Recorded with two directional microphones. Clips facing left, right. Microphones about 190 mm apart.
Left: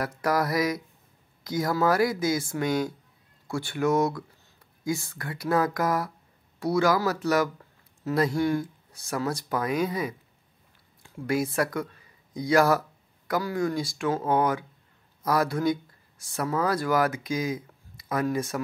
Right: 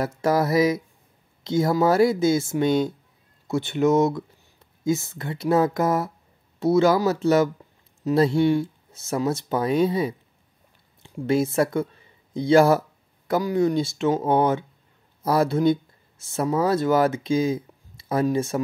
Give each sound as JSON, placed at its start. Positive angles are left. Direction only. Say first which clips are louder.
{"t": 0.0, "sound": "speech", "louder": "right 4 dB", "side_deg": -25}